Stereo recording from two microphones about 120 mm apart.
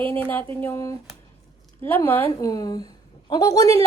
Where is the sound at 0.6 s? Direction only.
25° left (ahead or behind).